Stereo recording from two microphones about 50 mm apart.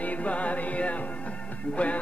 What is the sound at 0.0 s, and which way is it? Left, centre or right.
Music, left.